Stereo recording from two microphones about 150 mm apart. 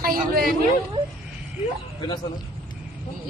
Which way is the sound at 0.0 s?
75° right (ahead or behind).